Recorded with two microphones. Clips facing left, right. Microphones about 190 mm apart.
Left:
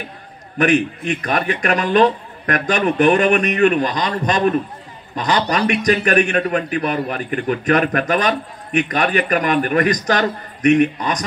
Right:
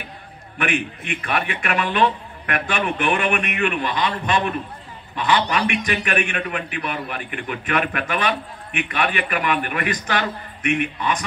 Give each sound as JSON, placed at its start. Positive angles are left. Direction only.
{"t": 0.6, "sound": "a man's voice", "side_deg": 40}